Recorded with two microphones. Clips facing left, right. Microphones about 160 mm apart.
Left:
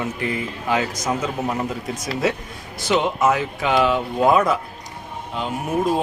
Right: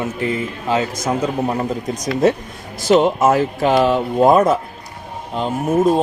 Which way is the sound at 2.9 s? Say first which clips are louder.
Right 5 dB; 45° right (ahead or behind).